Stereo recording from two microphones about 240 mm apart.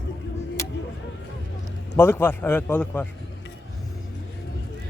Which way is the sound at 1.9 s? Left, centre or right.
Centre.